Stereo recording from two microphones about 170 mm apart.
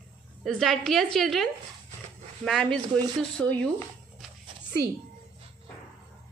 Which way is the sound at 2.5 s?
5° left (ahead or behind).